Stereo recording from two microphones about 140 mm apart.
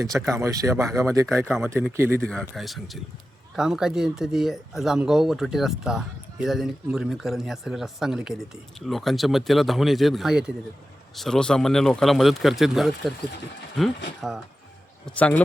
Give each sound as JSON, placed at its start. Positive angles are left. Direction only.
{"t": 0.2, "sound": "speech", "side_deg": -20}
{"t": 2.2, "sound": "speech", "side_deg": 5}
{"t": 15.0, "sound": "a man's voice", "side_deg": 10}